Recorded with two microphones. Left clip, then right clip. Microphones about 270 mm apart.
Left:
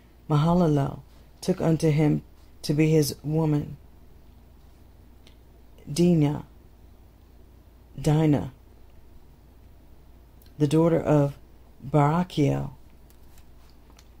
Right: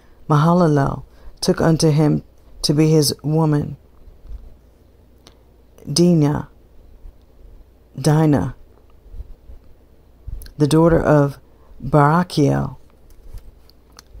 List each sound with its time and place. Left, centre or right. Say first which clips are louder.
0.3 s speech: right 8 dB; right
5.9 s speech: right 7 dB; right
8.0 s speech: right 7 dB; right
10.6 s speech: right 8 dB; right